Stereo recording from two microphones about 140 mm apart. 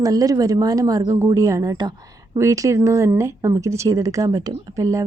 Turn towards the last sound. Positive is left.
turn(degrees=-25)  # may be behind; listen again after turning